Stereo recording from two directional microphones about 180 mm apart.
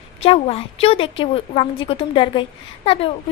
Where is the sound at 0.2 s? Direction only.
35° left (ahead or behind).